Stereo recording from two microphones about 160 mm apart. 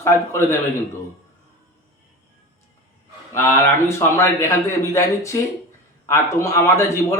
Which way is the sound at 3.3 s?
15° left (ahead or behind).